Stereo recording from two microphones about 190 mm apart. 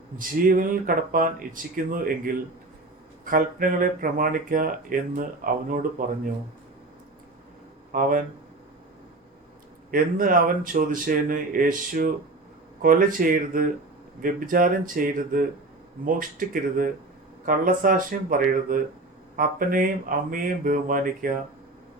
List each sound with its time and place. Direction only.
0.2 s speech: 45° right (ahead or behind)
7.9 s speech: 45° right (ahead or behind)
9.9 s speech: 45° right (ahead or behind)